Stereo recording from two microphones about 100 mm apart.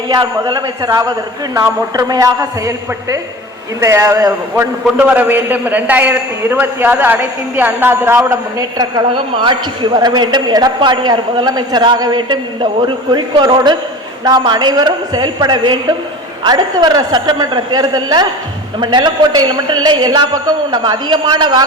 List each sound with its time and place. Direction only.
0.1 s a man's voice: 45° right (ahead or behind)
9.1 s a man's voice: 55° right (ahead or behind)